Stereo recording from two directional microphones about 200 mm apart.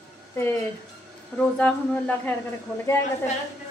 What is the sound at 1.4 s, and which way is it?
Speech, 5° left (ahead or behind).